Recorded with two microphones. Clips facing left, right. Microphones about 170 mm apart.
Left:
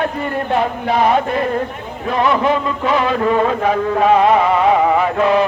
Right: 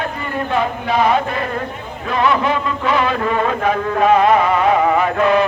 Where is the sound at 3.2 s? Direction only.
30° left (ahead or behind).